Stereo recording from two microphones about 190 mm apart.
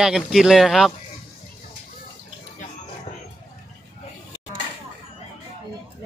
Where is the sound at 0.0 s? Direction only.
Centre (ahead or behind).